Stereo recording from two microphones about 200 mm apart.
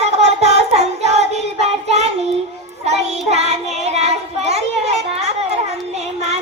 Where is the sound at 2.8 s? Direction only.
30° right (ahead or behind).